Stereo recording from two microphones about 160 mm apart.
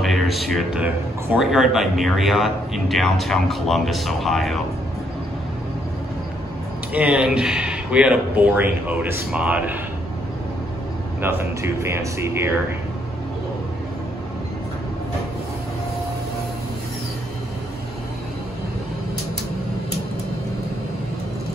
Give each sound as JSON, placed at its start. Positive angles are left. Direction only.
{"t": 0.0, "sound": "a man's voice", "side_deg": 0}
{"t": 6.9, "sound": "speech", "side_deg": -5}
{"t": 11.1, "sound": "speech", "side_deg": -15}